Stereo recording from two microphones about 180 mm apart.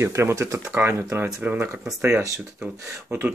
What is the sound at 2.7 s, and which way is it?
Speech, 15° right (ahead or behind).